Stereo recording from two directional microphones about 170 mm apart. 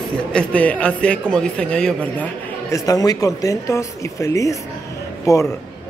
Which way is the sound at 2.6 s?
20° left (ahead or behind).